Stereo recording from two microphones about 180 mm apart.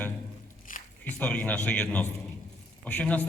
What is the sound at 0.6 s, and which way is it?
Squish, 45° left (ahead or behind).